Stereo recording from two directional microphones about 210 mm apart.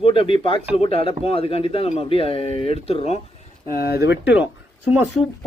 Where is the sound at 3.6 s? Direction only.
45° left (ahead or behind).